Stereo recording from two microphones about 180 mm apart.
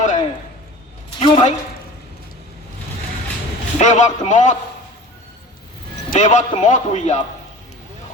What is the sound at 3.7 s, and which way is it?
Speech, 40° left (ahead or behind).